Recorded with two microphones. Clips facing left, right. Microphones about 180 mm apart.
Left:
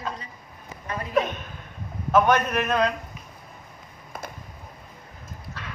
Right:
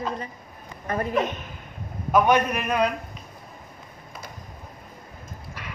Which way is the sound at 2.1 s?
10° right (ahead or behind).